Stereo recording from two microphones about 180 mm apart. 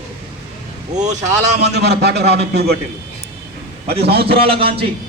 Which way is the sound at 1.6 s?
65° right (ahead or behind).